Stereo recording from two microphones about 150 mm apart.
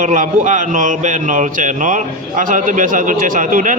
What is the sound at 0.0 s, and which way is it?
A man's voice, 60° right (ahead or behind).